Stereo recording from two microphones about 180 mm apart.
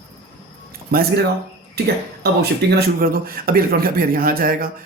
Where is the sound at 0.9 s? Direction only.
55° right (ahead or behind).